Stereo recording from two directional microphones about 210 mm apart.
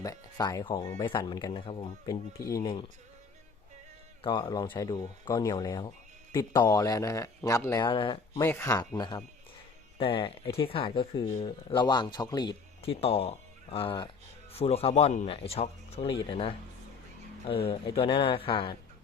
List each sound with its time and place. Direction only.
0.0 s speech: 15° left (ahead or behind)
4.2 s speech: 20° left (ahead or behind)
8.4 s speech: 10° left (ahead or behind)